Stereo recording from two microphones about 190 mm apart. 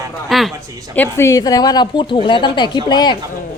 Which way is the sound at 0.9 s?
10° left (ahead or behind).